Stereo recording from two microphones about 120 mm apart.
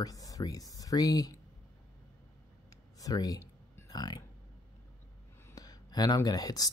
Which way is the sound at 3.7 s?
30° left (ahead or behind).